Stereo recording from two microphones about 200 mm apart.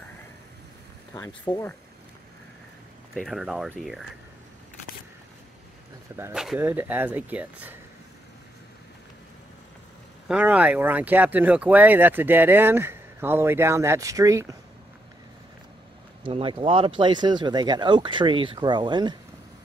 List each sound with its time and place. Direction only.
1.1 s speech: 15° left (ahead or behind)
3.2 s speech: centre (ahead or behind)
6.1 s speech: 5° right (ahead or behind)
10.2 s speech: 5° right (ahead or behind)
16.3 s speech: 25° right (ahead or behind)